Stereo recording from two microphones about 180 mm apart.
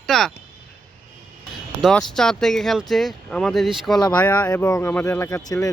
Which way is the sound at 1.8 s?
5° left (ahead or behind).